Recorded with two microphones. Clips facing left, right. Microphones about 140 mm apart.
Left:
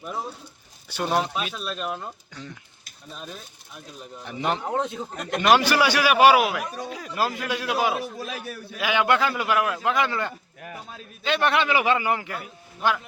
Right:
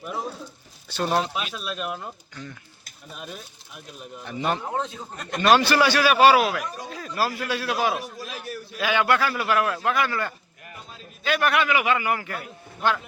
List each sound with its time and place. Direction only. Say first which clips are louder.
0.9 s a man's voice: right 2 dB; 10° left (ahead or behind)
1.5 s a man's voice: left 1 dB; 5° right (ahead or behind)
2.0 s a man's voice: even; 15° left (ahead or behind)
3.2 s speech: right 1 dB; 10° right (ahead or behind)
4.2 s a man's voice: even; 15° left (ahead or behind)
7.9 s a man's voice: left 3 dB; centre (ahead or behind)
8.8 s a man's voice: even; 15° left (ahead or behind)